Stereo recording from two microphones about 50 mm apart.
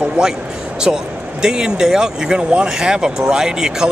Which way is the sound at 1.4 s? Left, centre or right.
Centre.